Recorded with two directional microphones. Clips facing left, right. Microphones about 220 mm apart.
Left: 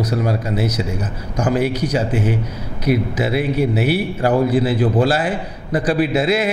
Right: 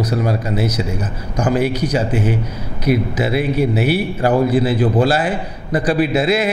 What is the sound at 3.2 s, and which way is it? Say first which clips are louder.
A man's voice: right 1 dB; 15° right (ahead or behind).